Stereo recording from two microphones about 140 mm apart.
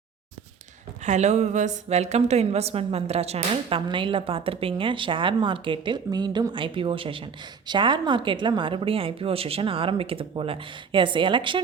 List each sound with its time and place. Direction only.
1.0 s a woman's voice: 55° right (ahead or behind); by 11.6 s 35° right (ahead or behind)